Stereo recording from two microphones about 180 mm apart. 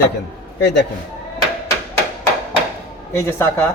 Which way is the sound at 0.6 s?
70° left (ahead or behind).